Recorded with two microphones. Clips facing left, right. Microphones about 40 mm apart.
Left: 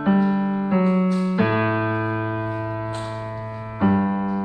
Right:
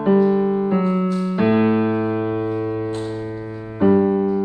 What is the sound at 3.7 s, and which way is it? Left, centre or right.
Music, centre.